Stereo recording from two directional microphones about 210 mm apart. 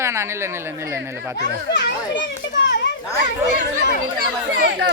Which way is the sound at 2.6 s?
55° left (ahead or behind).